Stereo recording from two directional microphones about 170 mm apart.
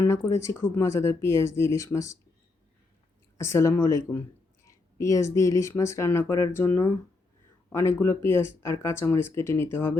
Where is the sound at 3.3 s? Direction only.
15° left (ahead or behind).